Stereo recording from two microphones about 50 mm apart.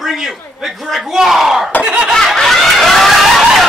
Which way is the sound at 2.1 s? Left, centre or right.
Centre.